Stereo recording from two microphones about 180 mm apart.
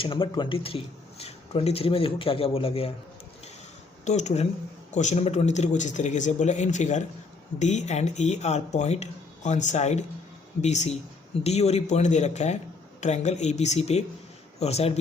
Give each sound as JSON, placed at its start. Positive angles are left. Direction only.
{"t": 0.0, "sound": "speech", "side_deg": 30}
{"t": 4.0, "sound": "speech", "side_deg": 40}